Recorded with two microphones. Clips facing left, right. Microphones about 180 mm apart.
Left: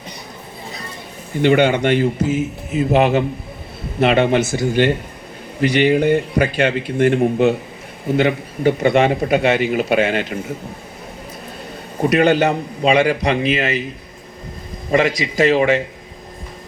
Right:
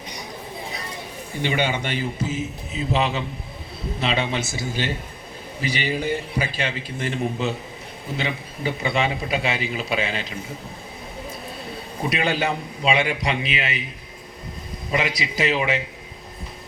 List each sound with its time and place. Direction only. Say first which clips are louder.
1.4 s a man's voice: left 10 dB; 55° left (ahead or behind)
12.0 s a man's voice: left 9 dB; 55° left (ahead or behind)
14.8 s a man's voice: left 8 dB; 45° left (ahead or behind)